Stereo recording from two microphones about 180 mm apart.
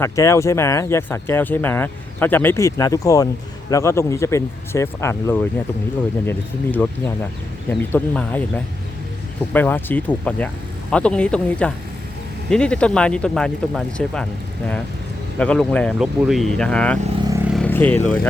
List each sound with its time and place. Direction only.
0.0 s speech: 15° left (ahead or behind)
15.4 s speech: 5° left (ahead or behind)
17.2 s vehicle: 15° right (ahead or behind)
17.5 s vehicle: 10° left (ahead or behind)